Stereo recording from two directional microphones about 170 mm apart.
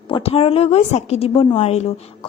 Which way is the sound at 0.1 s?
35° left (ahead or behind).